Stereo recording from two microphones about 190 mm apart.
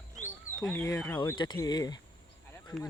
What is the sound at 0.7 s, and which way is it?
Speech, 15° left (ahead or behind).